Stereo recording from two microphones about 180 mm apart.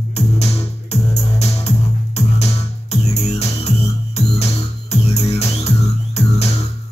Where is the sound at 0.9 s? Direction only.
35° left (ahead or behind).